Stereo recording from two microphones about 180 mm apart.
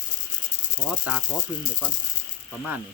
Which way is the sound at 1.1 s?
5° right (ahead or behind).